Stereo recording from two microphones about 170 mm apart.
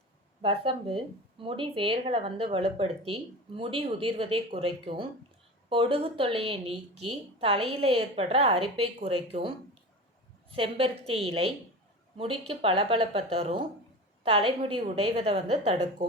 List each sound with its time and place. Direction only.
0.4 s speech: 35° right (ahead or behind)
10.5 s speech: 30° right (ahead or behind)